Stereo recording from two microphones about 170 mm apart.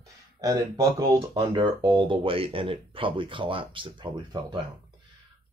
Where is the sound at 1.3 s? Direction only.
25° right (ahead or behind).